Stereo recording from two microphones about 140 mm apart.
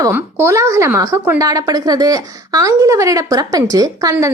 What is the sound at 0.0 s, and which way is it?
A woman's voice, 15° right (ahead or behind).